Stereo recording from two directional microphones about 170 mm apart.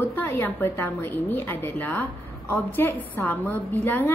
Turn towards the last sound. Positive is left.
turn(degrees=10)  # may be behind; listen again after turning